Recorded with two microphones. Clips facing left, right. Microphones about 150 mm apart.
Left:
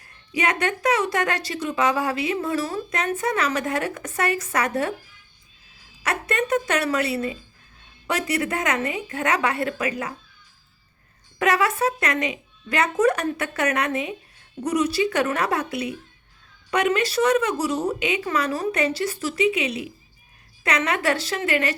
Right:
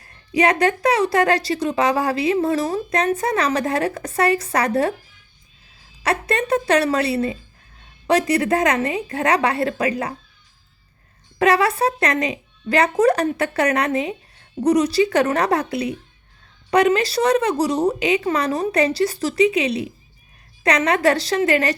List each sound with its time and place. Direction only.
0.3 s a woman's voice: 35° right (ahead or behind)
6.0 s a woman's voice: 35° right (ahead or behind)
11.3 s a woman's voice: 35° right (ahead or behind)